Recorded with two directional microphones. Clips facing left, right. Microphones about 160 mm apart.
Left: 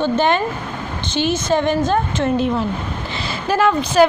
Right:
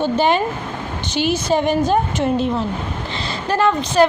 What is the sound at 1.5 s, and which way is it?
Speech, 10° right (ahead or behind).